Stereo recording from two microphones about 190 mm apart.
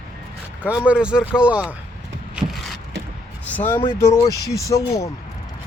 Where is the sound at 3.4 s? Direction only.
10° left (ahead or behind).